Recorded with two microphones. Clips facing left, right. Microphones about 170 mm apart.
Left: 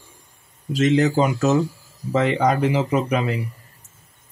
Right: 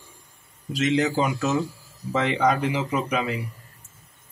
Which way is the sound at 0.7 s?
45° left (ahead or behind).